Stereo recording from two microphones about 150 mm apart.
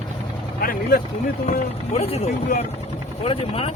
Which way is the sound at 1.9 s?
40° left (ahead or behind).